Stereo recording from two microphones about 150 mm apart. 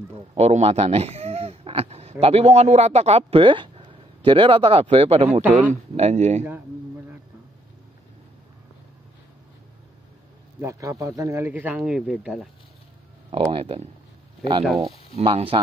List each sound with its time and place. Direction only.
0.3 s speech: 45° right (ahead or behind)
10.6 s speech: 20° right (ahead or behind); by 12.4 s 5° right (ahead or behind)
13.3 s speech: 40° right (ahead or behind)
15.1 s speech: 40° right (ahead or behind)